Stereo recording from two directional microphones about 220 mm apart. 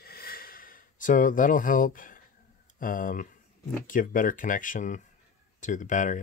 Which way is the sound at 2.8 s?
40° left (ahead or behind).